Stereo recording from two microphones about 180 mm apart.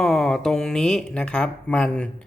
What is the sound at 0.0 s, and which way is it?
Speech, centre (ahead or behind).